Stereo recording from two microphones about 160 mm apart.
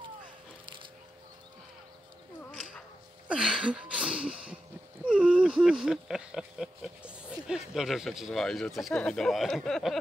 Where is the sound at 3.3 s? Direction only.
5° right (ahead or behind).